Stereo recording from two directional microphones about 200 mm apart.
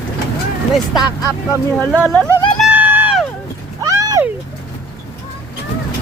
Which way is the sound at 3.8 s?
15° right (ahead or behind).